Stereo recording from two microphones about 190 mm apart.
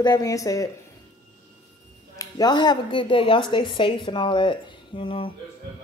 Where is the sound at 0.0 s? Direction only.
20° left (ahead or behind).